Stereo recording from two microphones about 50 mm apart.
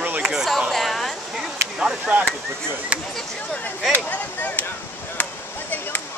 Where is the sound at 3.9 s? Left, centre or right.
Left.